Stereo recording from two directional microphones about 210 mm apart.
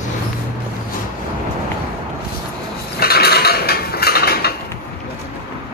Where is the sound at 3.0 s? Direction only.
50° left (ahead or behind).